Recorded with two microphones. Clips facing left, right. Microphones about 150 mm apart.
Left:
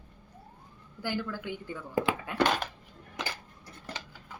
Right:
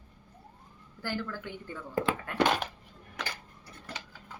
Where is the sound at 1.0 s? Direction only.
15° left (ahead or behind).